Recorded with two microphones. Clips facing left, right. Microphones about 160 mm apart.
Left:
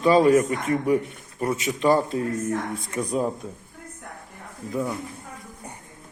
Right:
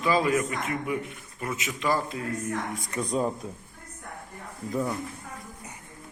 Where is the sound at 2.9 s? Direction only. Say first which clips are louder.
Left 2 dB; 5° left (ahead or behind).